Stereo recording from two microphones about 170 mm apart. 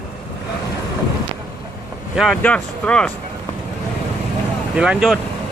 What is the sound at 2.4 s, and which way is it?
Speech, 5° left (ahead or behind).